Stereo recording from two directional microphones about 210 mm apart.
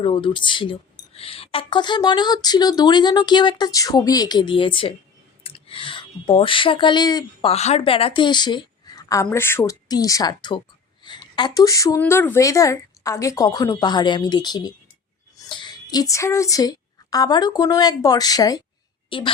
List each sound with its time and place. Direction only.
0.0 s a woman's voice: 25° left (ahead or behind)
7.5 s a woman's voice: 30° left (ahead or behind)